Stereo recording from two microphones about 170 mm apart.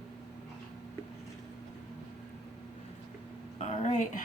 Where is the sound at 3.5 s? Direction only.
40° left (ahead or behind).